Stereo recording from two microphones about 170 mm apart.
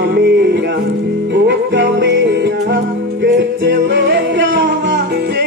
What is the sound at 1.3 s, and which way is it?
Music, 85° right.